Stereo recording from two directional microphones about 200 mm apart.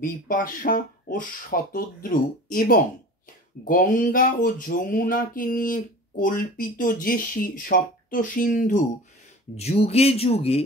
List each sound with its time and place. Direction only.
0.0 s speech: 45° left (ahead or behind)